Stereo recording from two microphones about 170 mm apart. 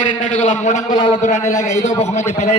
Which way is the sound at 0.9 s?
25° left (ahead or behind).